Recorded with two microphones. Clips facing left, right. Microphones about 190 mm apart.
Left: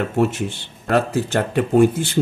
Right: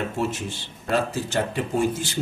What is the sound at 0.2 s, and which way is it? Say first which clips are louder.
A man's voice: left 7 dB; 60° left (ahead or behind).